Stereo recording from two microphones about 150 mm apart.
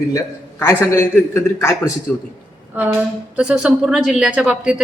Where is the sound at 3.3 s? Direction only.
5° right (ahead or behind).